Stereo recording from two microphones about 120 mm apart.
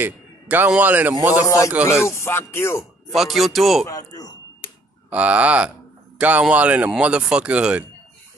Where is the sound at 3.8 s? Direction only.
30° left (ahead or behind).